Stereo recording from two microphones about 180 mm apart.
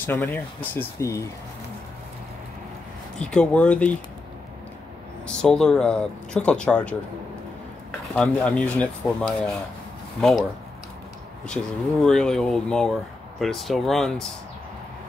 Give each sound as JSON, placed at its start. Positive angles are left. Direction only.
{"t": 0.0, "sound": "speech", "side_deg": 15}
{"t": 3.2, "sound": "speech", "side_deg": 5}
{"t": 5.2, "sound": "speech", "side_deg": 5}
{"t": 8.1, "sound": "speech", "side_deg": 5}
{"t": 11.4, "sound": "speech", "side_deg": 5}